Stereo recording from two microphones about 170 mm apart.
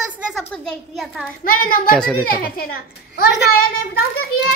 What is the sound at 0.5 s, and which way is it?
Speech, centre (ahead or behind).